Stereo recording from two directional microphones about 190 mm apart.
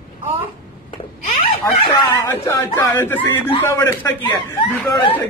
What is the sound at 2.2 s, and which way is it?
A woman's voice, 10° left (ahead or behind).